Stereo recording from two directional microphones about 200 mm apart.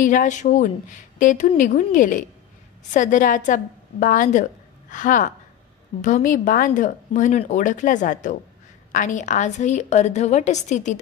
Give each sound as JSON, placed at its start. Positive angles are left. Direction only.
{"t": 0.0, "sound": "a woman's voice", "side_deg": 40}